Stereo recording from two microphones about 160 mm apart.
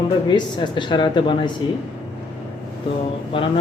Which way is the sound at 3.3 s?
30° left (ahead or behind).